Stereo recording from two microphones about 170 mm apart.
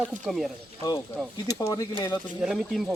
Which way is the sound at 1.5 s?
20° left (ahead or behind).